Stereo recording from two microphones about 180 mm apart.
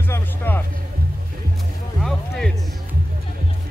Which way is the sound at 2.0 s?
Centre (ahead or behind).